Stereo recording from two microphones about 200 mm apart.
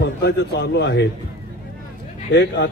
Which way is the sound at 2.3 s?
55° left (ahead or behind).